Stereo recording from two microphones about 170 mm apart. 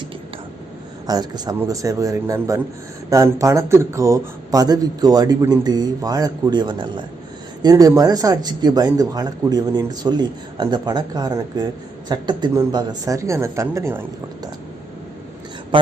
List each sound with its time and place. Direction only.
1.0 s speech: 20° right (ahead or behind)
15.7 s speech: 30° right (ahead or behind)